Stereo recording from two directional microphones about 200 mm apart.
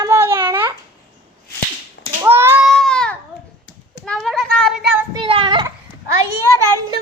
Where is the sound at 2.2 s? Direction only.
10° right (ahead or behind).